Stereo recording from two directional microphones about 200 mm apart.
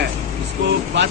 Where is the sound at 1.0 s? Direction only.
60° right (ahead or behind).